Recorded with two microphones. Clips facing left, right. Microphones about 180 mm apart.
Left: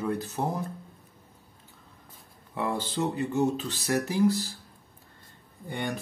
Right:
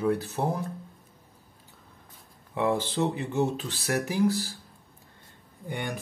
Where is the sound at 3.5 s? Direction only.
10° right (ahead or behind).